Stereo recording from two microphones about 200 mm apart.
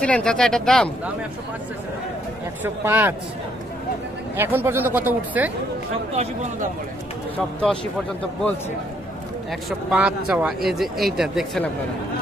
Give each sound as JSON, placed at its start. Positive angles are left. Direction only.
{"t": 0.0, "sound": "speech", "side_deg": 5}
{"t": 2.6, "sound": "speech", "side_deg": -10}
{"t": 4.4, "sound": "speech", "side_deg": -10}
{"t": 6.1, "sound": "speech", "side_deg": -35}
{"t": 7.3, "sound": "speech", "side_deg": 5}
{"t": 9.5, "sound": "speech", "side_deg": 0}